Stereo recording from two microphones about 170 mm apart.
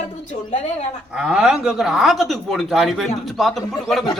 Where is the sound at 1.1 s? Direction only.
5° right (ahead or behind).